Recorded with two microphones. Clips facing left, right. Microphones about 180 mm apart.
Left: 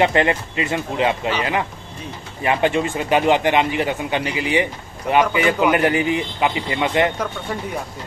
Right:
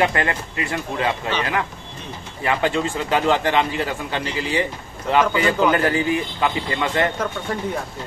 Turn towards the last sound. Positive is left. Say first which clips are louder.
# left 2 dB
turn(degrees=15)  # may be behind; listen again after turning